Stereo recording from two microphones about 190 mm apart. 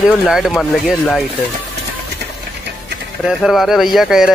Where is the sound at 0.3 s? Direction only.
Centre (ahead or behind).